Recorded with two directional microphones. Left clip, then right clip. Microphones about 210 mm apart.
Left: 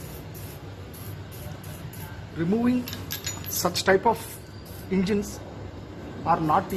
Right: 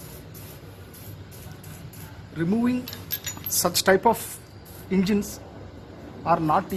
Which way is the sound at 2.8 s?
30° right (ahead or behind).